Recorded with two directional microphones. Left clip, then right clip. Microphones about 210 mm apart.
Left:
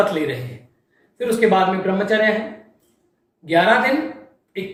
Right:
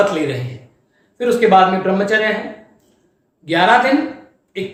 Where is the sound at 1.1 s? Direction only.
15° right (ahead or behind).